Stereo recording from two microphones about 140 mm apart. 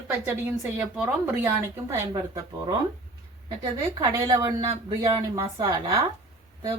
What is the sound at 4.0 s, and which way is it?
Speech, 25° right (ahead or behind).